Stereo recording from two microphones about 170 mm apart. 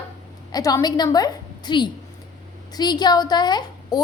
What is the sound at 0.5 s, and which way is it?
A woman's voice, 20° left (ahead or behind).